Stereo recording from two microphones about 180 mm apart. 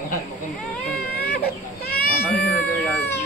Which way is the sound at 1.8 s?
60° left (ahead or behind).